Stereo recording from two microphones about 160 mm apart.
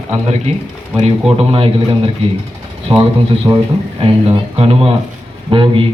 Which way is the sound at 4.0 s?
40° right (ahead or behind).